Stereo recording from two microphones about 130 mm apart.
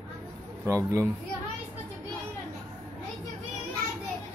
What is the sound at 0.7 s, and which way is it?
Speech, 25° right (ahead or behind).